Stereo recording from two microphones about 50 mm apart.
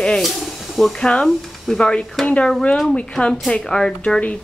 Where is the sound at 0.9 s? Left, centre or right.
Centre.